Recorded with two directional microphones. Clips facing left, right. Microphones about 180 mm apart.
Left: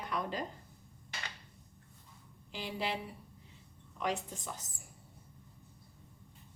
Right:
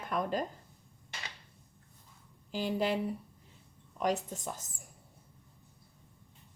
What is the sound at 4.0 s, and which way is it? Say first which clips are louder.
Speech: right 4 dB; 45° right (ahead or behind).